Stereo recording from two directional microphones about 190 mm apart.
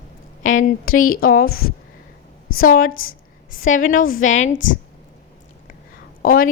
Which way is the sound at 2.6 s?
50° left (ahead or behind).